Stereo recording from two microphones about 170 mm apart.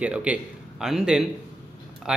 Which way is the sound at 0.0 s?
5° right (ahead or behind).